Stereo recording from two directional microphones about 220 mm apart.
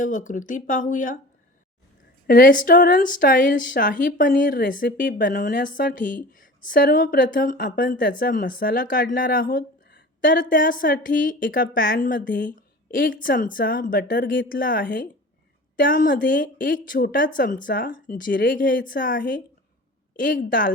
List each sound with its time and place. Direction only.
0.0 s speech: 35° left (ahead or behind)
2.2 s speech: 40° left (ahead or behind)